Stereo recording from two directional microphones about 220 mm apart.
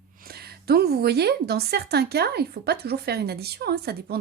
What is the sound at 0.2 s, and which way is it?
A woman's voice, 45° right (ahead or behind).